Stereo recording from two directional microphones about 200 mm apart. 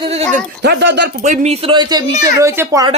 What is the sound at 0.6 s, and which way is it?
Speech, 60° right (ahead or behind).